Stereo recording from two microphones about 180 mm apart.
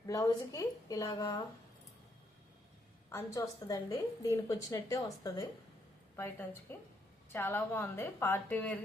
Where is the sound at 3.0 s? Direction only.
15° left (ahead or behind).